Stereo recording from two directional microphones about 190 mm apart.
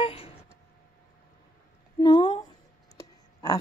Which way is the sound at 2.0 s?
25° left (ahead or behind).